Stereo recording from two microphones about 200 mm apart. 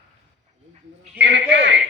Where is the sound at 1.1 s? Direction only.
60° right (ahead or behind).